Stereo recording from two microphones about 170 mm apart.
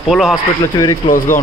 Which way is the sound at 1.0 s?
50° left (ahead or behind).